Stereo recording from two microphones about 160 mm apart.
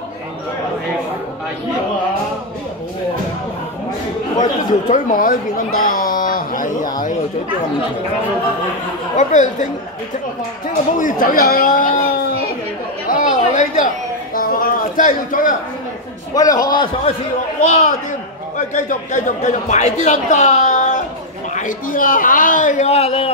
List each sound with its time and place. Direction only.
4.8 s speech: 55° left (ahead or behind)
9.1 s speech: 50° left (ahead or behind)
11.0 s a man's voice: 55° left (ahead or behind)
13.1 s chatter: 55° left (ahead or behind)
14.3 s a sound: 65° left (ahead or behind)
16.3 s a man's voice: 20° left (ahead or behind)
17.6 s a man's voice: 50° left (ahead or behind)